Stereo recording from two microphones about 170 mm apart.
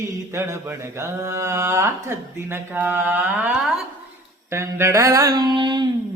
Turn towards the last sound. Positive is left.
turn(degrees=-25)  # may be behind; listen again after turning